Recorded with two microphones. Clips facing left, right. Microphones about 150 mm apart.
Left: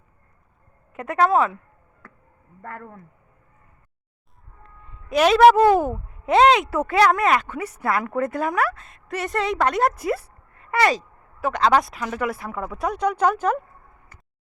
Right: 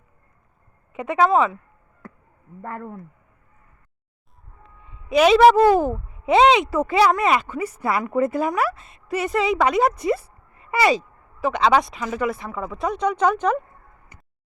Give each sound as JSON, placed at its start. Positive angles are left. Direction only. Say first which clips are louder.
{"t": 0.9, "sound": "a woman's voice", "louder": "right 1 dB", "side_deg": 0}
{"t": 2.6, "sound": "speech", "louder": "right 4 dB", "side_deg": -20}
{"t": 4.6, "sound": "a woman's voice", "louder": "left 1 dB", "side_deg": 0}